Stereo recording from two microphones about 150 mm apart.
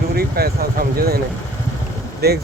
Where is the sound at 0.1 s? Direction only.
90° right.